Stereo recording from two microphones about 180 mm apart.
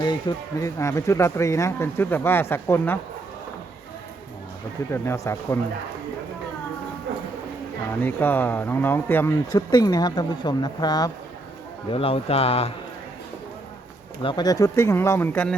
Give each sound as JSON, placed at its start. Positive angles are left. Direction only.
{"t": 0.0, "sound": "speech", "side_deg": 25}
{"t": 4.9, "sound": "speech", "side_deg": 15}
{"t": 8.0, "sound": "speech", "side_deg": 10}
{"t": 9.5, "sound": "speech", "side_deg": 20}
{"t": 14.2, "sound": "speech", "side_deg": 25}